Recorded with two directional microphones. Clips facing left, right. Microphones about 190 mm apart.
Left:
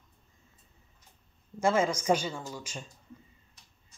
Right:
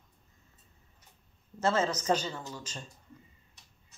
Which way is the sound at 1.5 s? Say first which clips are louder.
Left 2 dB; 10° left (ahead or behind).